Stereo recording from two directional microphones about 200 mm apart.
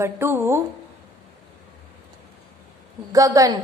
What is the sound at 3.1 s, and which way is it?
Speech, 15° right (ahead or behind).